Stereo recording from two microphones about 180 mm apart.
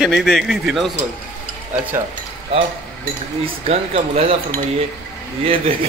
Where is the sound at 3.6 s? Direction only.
35° right (ahead or behind).